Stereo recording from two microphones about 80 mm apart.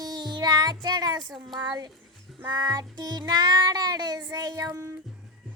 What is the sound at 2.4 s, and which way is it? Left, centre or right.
A child's voice, right.